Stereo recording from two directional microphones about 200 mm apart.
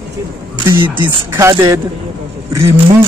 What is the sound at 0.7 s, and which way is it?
A man's voice, 10° right (ahead or behind).